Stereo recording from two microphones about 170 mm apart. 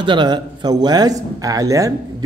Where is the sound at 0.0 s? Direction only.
25° right (ahead or behind).